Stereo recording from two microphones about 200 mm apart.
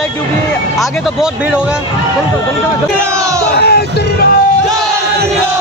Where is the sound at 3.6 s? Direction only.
55° left (ahead or behind).